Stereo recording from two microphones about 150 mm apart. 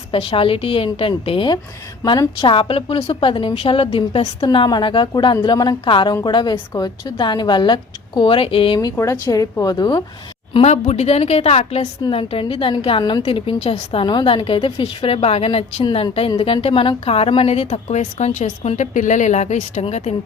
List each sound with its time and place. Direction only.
0.1 s a woman's voice: 35° left (ahead or behind)
9.0 s a woman's voice: 20° left (ahead or behind)
10.5 s a woman's voice: 45° left (ahead or behind)